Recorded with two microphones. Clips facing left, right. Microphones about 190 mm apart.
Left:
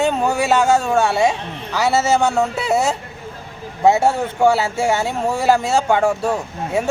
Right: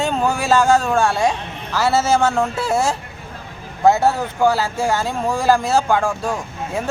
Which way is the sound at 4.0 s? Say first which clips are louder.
Left 1 dB; 25° left (ahead or behind).